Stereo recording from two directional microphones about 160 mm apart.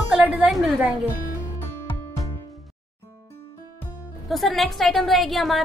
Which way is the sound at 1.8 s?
20° left (ahead or behind).